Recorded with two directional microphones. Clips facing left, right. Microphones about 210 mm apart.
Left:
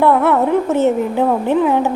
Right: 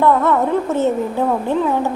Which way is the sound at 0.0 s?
10° left (ahead or behind).